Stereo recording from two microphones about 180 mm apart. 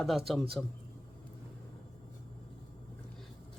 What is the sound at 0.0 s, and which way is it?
Speech, centre (ahead or behind).